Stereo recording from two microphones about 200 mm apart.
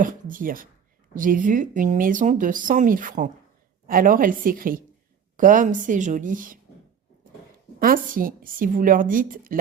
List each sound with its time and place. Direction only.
0.0 s a woman's voice: 40° right (ahead or behind)
7.8 s a woman's voice: 45° right (ahead or behind)